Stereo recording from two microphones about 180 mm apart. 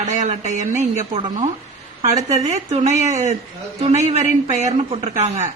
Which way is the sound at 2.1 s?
40° right (ahead or behind).